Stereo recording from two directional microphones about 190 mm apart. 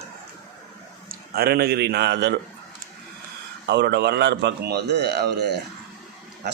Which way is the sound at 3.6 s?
65° right (ahead or behind).